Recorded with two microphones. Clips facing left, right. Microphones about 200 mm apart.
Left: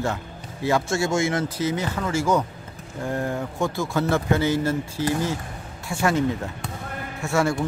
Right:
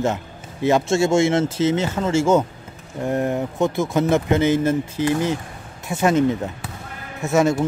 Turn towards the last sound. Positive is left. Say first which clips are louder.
# right 5 dB
turn(degrees=-20)  # may be behind; listen again after turning